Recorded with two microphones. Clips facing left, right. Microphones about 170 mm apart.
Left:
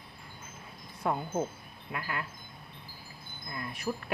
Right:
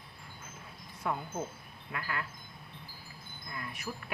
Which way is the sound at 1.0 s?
35° left (ahead or behind).